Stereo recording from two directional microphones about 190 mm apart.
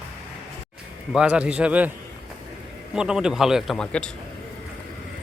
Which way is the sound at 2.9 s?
5° right (ahead or behind).